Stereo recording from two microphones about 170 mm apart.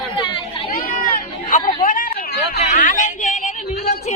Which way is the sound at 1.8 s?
50° left (ahead or behind).